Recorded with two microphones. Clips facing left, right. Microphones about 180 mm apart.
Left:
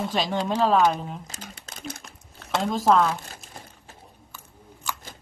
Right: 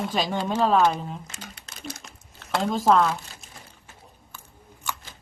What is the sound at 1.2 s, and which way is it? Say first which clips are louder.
Speech: left 1 dB; 45° left (ahead or behind).